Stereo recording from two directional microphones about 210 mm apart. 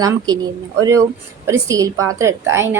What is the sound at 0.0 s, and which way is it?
A woman's voice, 15° right (ahead or behind).